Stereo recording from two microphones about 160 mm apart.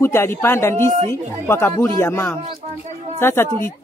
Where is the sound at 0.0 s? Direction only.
15° left (ahead or behind).